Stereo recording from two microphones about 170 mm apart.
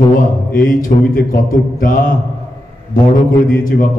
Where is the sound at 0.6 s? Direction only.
55° left (ahead or behind).